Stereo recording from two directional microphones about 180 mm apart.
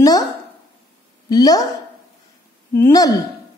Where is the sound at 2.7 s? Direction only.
15° left (ahead or behind).